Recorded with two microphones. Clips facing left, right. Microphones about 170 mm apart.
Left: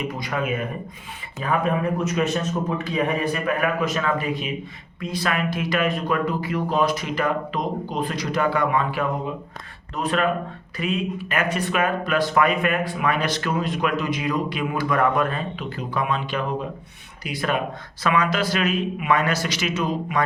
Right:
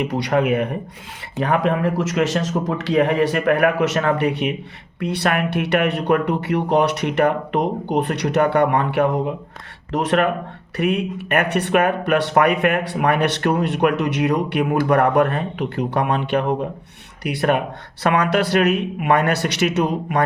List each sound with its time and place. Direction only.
0.0 s a man's voice: 70° right (ahead or behind)
9.9 s speech: 80° right